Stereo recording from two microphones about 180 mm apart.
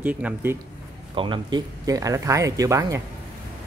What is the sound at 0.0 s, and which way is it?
Speech, 10° right (ahead or behind).